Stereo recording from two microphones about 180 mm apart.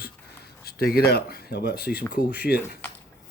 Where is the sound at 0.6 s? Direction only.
60° left (ahead or behind).